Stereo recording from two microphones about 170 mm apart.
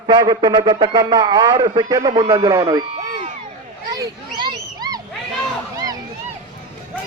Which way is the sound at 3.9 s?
25° right (ahead or behind).